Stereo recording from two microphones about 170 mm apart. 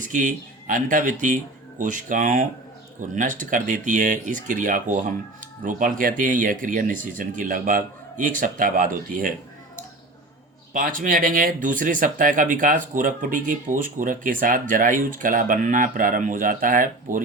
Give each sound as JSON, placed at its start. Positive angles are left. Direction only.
{"t": 0.1, "sound": "speech", "side_deg": -50}
{"t": 10.8, "sound": "speech", "side_deg": -55}